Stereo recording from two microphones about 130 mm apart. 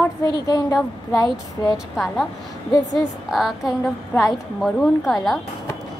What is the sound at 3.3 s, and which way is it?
A woman's voice, centre (ahead or behind).